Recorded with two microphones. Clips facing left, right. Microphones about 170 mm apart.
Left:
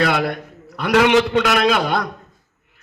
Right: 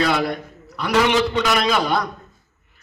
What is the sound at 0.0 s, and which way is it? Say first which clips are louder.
A man's voice: left 1 dB; 60° left (ahead or behind).